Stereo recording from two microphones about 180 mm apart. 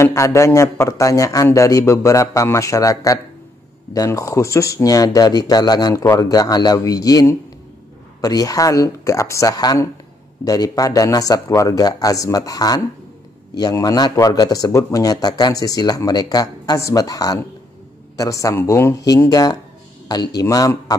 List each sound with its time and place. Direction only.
0.0 s a man's voice: 15° left (ahead or behind)